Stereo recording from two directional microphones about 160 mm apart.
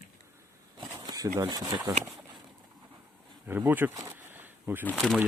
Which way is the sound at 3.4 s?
10° right (ahead or behind).